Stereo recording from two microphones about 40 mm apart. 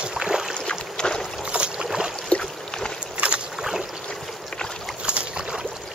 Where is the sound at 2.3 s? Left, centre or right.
Left.